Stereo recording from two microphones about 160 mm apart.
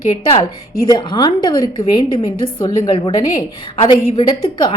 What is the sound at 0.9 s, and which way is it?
A woman's voice, 25° left (ahead or behind).